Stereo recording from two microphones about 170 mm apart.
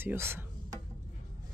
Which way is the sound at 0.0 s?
15° right (ahead or behind).